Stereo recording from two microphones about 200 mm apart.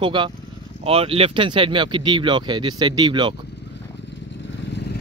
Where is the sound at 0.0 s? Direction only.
25° right (ahead or behind).